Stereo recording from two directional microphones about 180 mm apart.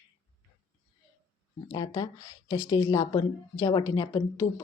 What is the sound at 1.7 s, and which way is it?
Speech, 20° left (ahead or behind).